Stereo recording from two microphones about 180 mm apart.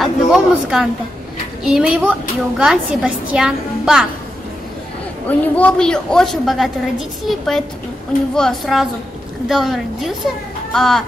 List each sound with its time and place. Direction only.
0.0 s a sound: 5° right (ahead or behind)
1.6 s a woman's voice: 5° right (ahead or behind)
5.4 s a woman's voice: 5° left (ahead or behind)